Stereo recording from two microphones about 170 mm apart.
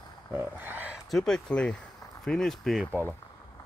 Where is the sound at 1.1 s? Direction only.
5° left (ahead or behind).